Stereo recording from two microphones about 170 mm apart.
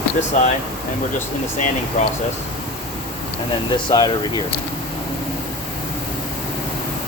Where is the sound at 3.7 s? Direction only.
25° left (ahead or behind).